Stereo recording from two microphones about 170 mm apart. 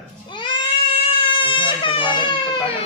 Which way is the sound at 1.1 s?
30° left (ahead or behind).